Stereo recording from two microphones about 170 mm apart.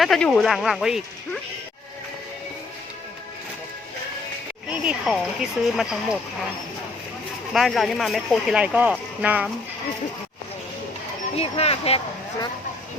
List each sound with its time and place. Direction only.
0.0 s speech: centre (ahead or behind)
4.7 s speech: 5° right (ahead or behind)
7.5 s speech: centre (ahead or behind)
11.3 s speech: 35° left (ahead or behind)